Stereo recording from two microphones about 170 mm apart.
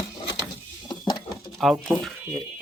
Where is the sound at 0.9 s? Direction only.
25° left (ahead or behind).